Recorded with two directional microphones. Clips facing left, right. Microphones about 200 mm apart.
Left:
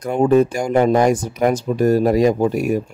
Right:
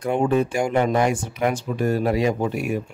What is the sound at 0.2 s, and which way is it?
Speech, 40° left (ahead or behind).